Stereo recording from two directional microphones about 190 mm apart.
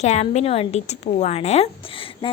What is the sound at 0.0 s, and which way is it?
A woman's voice, 35° left (ahead or behind).